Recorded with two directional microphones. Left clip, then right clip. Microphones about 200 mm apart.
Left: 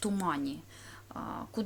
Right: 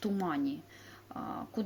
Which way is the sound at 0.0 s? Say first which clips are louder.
Left 1 dB; 20° left (ahead or behind).